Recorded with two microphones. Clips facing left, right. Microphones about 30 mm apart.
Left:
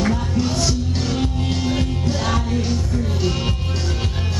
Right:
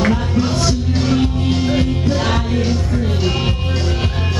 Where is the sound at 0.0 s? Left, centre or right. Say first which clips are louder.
Right 4 dB; right.